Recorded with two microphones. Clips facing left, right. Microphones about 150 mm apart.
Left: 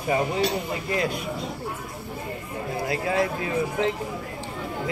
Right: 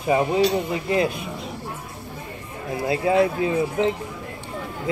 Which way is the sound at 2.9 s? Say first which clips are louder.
Right 6 dB; 25° right (ahead or behind).